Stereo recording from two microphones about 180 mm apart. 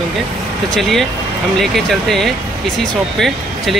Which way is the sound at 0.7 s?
Centre (ahead or behind).